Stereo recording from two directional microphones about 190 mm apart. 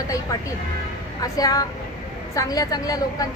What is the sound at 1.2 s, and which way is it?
A woman's voice, 20° left (ahead or behind).